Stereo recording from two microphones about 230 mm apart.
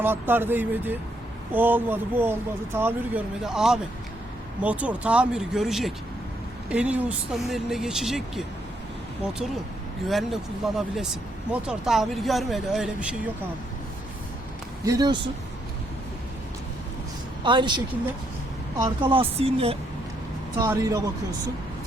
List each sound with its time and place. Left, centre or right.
0.0 s speech: centre
14.8 s speech: centre
17.4 s speech: centre